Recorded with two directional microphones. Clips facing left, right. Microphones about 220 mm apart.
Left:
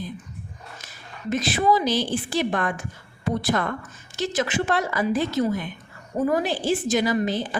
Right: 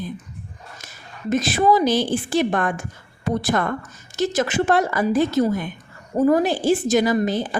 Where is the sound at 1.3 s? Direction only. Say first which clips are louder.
Right 3 dB; 45° right (ahead or behind).